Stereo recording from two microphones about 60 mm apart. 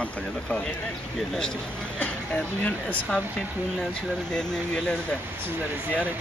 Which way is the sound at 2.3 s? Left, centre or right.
Left.